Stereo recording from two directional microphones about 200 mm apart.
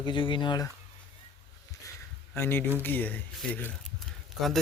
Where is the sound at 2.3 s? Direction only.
10° left (ahead or behind).